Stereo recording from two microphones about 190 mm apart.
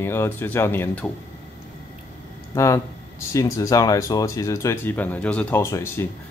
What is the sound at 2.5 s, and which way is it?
Speech, 15° left (ahead or behind).